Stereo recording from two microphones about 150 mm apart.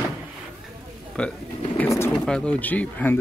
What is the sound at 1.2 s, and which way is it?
Speech, 10° left (ahead or behind).